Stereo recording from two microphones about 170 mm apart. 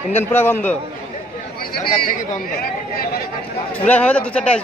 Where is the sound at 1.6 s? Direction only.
60° left (ahead or behind).